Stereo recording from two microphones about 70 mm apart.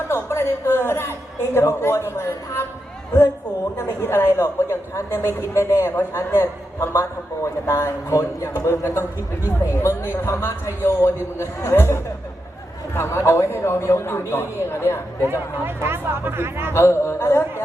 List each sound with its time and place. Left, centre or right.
0.1 s a woman's voice: left
3.8 s a woman's voice: left
15.2 s speech: right
16.7 s a woman's voice: left